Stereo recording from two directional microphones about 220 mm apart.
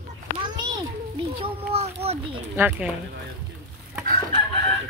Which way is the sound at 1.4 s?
25° right (ahead or behind).